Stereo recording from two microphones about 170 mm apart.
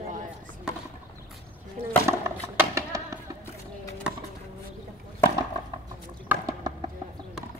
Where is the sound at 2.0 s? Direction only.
15° right (ahead or behind).